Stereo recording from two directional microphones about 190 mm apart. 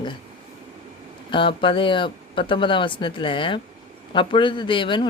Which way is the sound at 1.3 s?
25° left (ahead or behind).